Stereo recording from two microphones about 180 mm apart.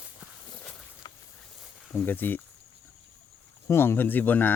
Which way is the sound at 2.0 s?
10° left (ahead or behind).